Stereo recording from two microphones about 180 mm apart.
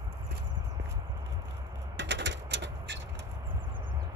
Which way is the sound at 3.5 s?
25° right (ahead or behind).